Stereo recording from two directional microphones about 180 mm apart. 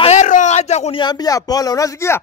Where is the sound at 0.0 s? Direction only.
40° left (ahead or behind).